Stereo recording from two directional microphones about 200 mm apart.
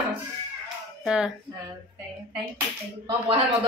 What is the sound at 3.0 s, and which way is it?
Speech, 25° right (ahead or behind).